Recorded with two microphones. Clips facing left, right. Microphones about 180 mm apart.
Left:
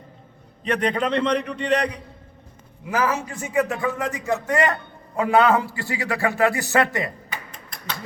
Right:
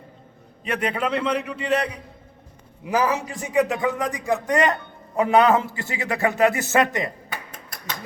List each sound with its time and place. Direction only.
0.6 s a man's voice: 10° right (ahead or behind)
2.8 s a man's voice: 15° right (ahead or behind)